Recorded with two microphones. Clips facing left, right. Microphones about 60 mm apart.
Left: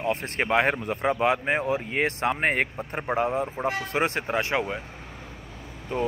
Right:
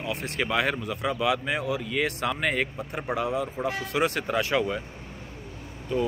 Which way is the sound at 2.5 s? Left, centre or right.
Left.